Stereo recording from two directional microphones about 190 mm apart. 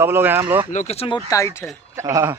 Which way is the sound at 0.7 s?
35° left (ahead or behind).